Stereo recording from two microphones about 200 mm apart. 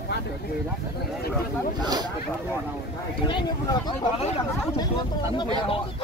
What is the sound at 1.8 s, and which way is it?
Speech, 20° right (ahead or behind).